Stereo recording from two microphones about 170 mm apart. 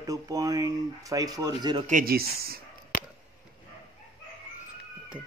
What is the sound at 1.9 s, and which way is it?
Speech, 60° right (ahead or behind).